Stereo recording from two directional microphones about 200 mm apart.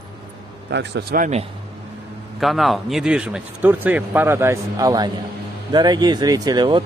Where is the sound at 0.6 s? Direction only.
55° right (ahead or behind).